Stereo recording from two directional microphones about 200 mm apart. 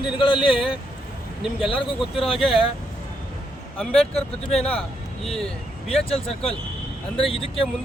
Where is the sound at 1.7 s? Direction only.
25° left (ahead or behind).